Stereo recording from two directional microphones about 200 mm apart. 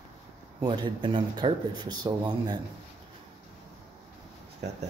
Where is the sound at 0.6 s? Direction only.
25° right (ahead or behind).